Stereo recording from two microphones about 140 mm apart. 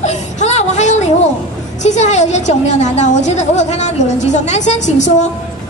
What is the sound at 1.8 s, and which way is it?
A woman's voice, 55° left (ahead or behind).